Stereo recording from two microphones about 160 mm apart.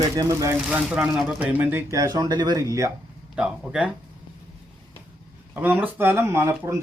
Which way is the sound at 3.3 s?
5° right (ahead or behind).